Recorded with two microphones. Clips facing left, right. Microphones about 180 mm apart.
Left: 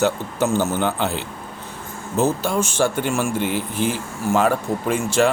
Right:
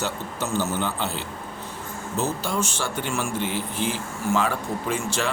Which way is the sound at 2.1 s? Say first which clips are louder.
Left 7 dB; 50° left (ahead or behind).